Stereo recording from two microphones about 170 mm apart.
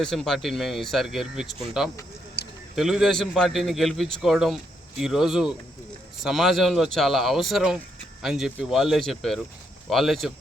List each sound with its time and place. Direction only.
0.0 s speech: 5° left (ahead or behind)
2.4 s a sound: 70° left (ahead or behind)
2.7 s speech: centre (ahead or behind)